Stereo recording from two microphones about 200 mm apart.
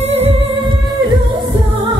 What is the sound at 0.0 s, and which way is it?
Music, 30° right (ahead or behind).